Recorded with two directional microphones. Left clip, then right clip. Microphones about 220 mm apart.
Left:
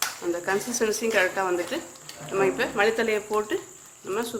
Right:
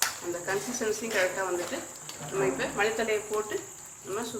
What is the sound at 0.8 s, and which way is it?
Speech, 50° left (ahead or behind).